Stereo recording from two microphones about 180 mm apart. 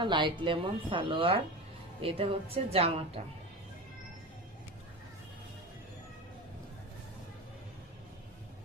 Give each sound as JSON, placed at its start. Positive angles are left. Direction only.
{"t": 0.0, "sound": "a woman's voice", "side_deg": -25}